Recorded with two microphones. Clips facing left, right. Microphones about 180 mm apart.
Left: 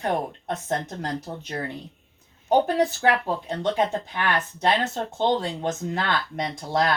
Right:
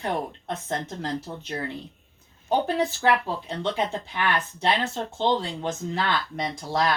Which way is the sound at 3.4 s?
45° left (ahead or behind).